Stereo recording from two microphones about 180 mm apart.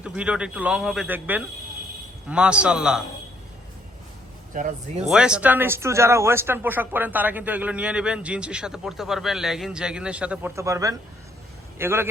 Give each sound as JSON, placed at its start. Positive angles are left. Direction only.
{"t": 0.0, "sound": "speech", "side_deg": -5}
{"t": 4.5, "sound": "speech", "side_deg": -45}
{"t": 5.0, "sound": "speech", "side_deg": -5}